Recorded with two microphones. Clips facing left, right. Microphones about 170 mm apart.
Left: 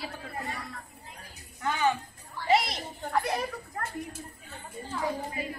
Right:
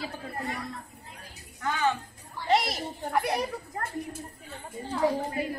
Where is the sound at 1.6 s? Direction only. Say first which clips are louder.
Even; 20° left (ahead or behind).